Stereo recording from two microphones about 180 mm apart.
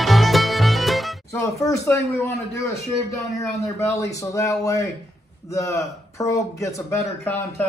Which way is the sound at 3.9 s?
15° left (ahead or behind).